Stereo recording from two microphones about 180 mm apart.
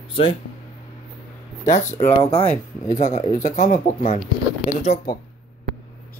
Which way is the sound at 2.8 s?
45° left (ahead or behind).